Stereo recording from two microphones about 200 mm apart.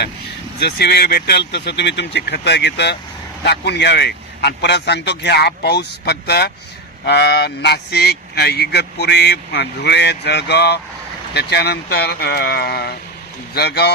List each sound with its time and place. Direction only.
0.6 s speech: 50° left (ahead or behind)